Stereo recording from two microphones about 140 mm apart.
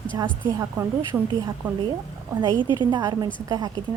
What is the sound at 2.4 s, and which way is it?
A woman's voice, 35° right (ahead or behind).